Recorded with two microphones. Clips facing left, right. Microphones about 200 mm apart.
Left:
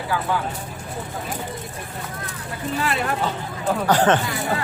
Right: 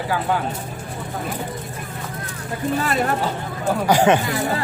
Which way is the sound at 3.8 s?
10° right (ahead or behind).